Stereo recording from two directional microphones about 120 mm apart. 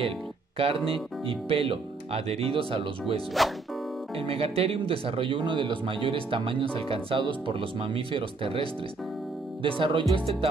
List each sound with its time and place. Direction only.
0.6 s speech: 50° right (ahead or behind)
3.4 s speech: centre (ahead or behind)
4.2 s speech: 50° right (ahead or behind)